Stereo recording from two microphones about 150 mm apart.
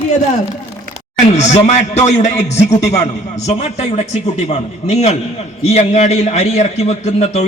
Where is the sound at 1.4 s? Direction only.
50° left (ahead or behind).